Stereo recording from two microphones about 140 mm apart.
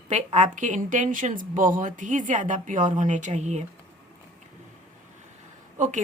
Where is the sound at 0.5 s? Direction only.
65° right (ahead or behind).